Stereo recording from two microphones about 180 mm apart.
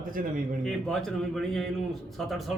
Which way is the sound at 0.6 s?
Centre (ahead or behind).